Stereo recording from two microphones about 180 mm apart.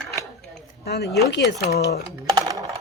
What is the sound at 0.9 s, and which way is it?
Speech, 65° left (ahead or behind).